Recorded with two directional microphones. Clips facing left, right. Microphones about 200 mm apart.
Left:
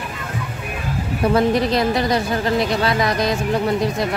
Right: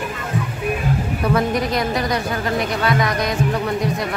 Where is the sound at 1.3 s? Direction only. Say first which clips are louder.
Left 3 dB; 30° left (ahead or behind).